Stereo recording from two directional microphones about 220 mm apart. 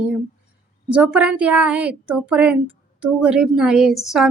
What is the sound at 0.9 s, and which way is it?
A woman's voice, 5° right (ahead or behind).